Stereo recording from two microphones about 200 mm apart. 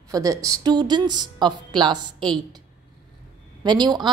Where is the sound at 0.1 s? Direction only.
15° right (ahead or behind).